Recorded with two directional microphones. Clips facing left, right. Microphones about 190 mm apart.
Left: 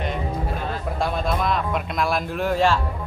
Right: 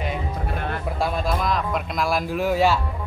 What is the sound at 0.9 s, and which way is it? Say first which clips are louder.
Speech: left 1 dB; centre (ahead or behind).